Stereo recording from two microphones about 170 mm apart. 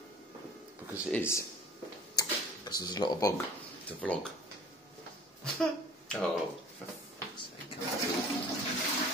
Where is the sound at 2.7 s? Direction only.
25° left (ahead or behind).